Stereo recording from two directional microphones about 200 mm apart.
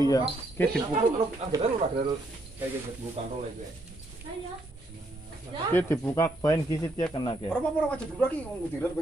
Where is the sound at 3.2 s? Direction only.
30° right (ahead or behind).